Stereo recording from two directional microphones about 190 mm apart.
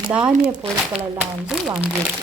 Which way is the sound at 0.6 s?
30° right (ahead or behind).